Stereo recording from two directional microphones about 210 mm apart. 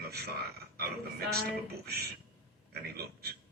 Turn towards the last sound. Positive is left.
turn(degrees=-50)  # may be behind; listen again after turning